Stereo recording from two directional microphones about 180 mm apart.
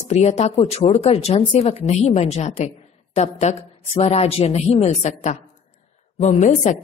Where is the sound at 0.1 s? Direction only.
40° left (ahead or behind).